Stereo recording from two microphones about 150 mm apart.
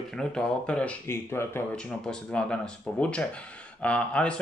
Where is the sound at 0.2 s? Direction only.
5° left (ahead or behind).